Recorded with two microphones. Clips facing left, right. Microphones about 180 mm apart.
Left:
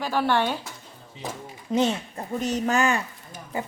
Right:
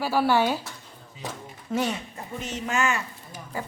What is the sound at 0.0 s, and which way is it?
Speech, 10° right (ahead or behind).